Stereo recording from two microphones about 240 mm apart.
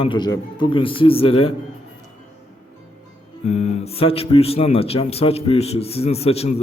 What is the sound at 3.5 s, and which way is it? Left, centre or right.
Speech, left.